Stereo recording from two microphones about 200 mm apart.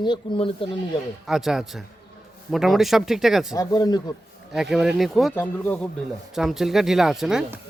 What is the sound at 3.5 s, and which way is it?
Speech, 20° left (ahead or behind).